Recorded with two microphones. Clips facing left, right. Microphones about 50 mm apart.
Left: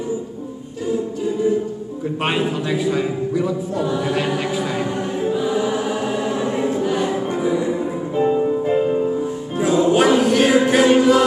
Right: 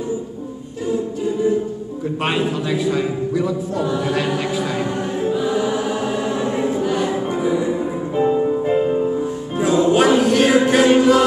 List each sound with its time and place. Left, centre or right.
2.1 s a man's voice: centre
3.8 s chant: centre
4.3 s chant: centre
6.8 s music: centre
7.3 s music: centre
9.6 s music: centre
11.0 s chant: centre